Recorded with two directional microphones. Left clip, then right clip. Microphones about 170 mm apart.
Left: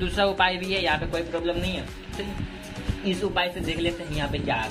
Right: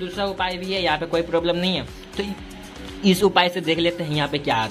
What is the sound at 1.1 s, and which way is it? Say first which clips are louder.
Speech: right 6 dB; 35° right (ahead or behind).